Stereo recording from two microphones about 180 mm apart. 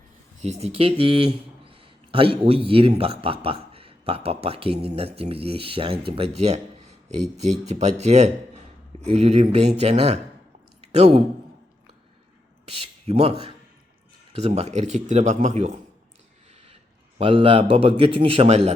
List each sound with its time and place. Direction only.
0.4 s speech: 35° right (ahead or behind)
10.8 s a sound: 35° right (ahead or behind)
12.6 s speech: 35° right (ahead or behind)
17.2 s speech: 30° right (ahead or behind)